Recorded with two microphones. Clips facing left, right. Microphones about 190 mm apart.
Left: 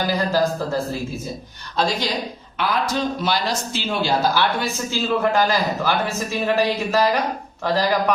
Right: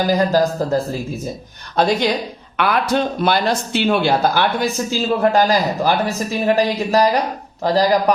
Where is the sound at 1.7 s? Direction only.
55° right (ahead or behind).